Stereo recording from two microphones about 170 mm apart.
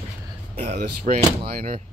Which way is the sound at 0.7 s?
70° right (ahead or behind).